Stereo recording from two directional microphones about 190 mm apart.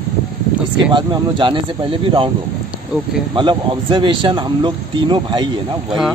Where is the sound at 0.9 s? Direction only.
25° right (ahead or behind).